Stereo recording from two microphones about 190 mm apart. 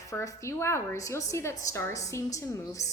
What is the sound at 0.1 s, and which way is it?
A woman's voice, 15° left (ahead or behind).